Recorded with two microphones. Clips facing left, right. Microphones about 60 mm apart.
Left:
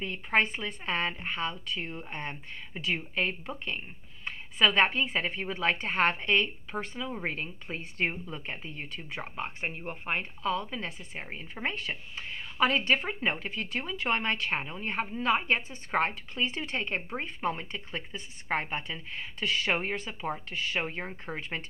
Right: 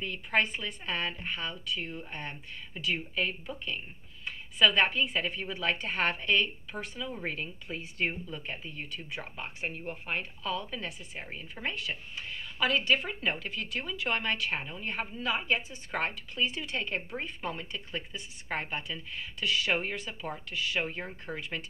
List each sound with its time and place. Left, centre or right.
0.0 s a woman's voice: left